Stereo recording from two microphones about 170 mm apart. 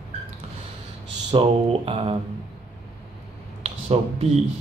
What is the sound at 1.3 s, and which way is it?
Speech, 35° right (ahead or behind).